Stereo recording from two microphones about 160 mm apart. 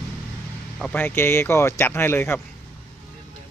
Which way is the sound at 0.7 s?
5° left (ahead or behind).